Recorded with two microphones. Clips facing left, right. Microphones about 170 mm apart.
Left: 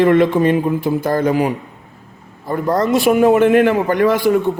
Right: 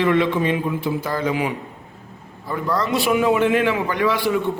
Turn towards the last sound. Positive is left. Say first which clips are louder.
# left 6 dB
turn(degrees=45)  # may be behind; listen again after turning